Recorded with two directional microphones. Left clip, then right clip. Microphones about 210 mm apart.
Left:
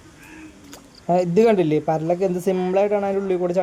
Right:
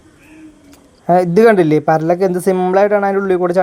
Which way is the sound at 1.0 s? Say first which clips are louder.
Right 7 dB; 15° right (ahead or behind).